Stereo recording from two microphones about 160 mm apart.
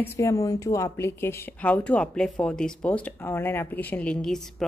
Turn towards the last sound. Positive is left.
turn(degrees=5)  # may be behind; listen again after turning